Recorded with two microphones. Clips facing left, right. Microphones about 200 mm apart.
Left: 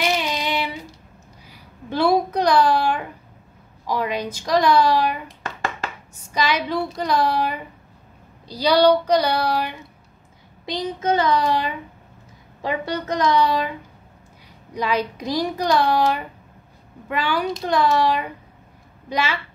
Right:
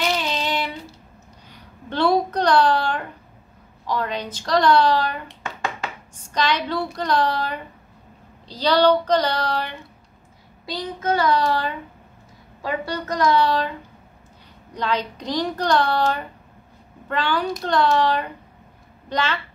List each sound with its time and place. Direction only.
0.0 s child singing: 10° left (ahead or behind)
1.5 s a sound: 10° left (ahead or behind)
3.8 s speech: 10° left (ahead or behind)
10.6 s speech: 20° left (ahead or behind)